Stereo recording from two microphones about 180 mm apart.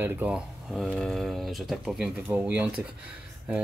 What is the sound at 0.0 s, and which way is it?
Speech, 10° right (ahead or behind).